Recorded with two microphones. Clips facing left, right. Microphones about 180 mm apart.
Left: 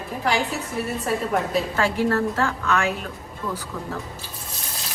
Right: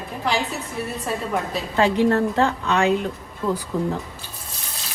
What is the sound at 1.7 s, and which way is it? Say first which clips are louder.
A woman's voice: right 7 dB; 20° right (ahead or behind).